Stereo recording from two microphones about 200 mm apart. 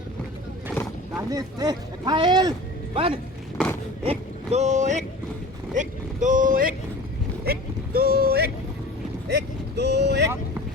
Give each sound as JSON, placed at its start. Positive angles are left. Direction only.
{"t": 1.1, "sound": "speech", "side_deg": -15}